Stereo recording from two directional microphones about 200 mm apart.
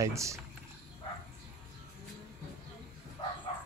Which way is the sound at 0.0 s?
15° right (ahead or behind).